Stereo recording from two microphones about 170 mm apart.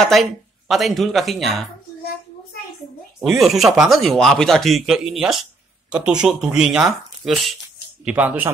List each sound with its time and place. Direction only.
0.0 s speech: centre (ahead or behind)
3.2 s speech: centre (ahead or behind)